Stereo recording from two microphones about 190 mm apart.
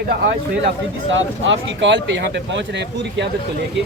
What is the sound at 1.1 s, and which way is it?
Speech, 75° right (ahead or behind).